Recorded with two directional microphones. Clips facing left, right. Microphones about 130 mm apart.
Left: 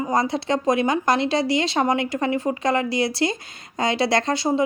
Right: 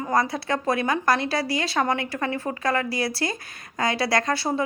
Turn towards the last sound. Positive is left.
turn(degrees=25)  # may be behind; listen again after turning